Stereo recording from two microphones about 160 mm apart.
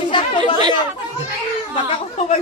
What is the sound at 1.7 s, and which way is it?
Speech, 35° left (ahead or behind).